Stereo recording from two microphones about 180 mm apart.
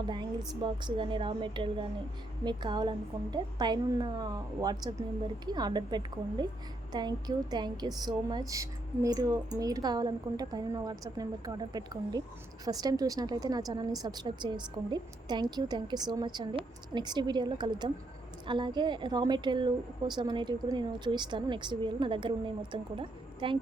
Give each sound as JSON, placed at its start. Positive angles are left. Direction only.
{"t": 0.6, "sound": "a woman's voice", "side_deg": -25}